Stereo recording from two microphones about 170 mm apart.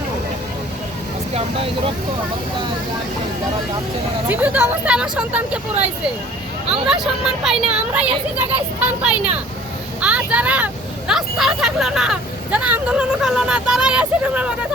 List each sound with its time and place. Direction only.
1.3 s speech: 35° right (ahead or behind)
4.3 s speech: 10° right (ahead or behind)
6.8 s speech: 5° right (ahead or behind)